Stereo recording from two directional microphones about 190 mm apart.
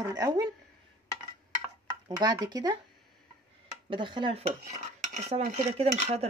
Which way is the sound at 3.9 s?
25° right (ahead or behind).